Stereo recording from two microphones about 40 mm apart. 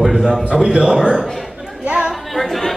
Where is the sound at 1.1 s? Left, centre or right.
Centre.